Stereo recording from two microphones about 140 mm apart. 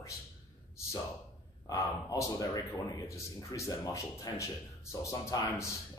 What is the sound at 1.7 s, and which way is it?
Speech, 25° left (ahead or behind).